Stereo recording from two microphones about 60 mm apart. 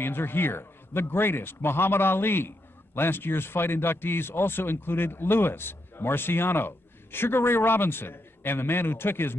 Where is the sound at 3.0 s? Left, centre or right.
Left.